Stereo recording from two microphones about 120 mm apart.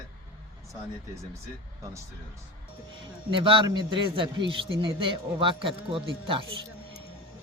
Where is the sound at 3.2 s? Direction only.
45° right (ahead or behind).